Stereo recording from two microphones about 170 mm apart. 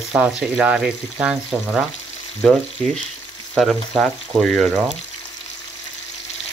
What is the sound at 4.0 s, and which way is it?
Speech, centre (ahead or behind).